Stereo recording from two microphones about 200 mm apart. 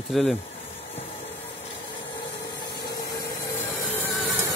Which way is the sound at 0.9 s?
30° left (ahead or behind).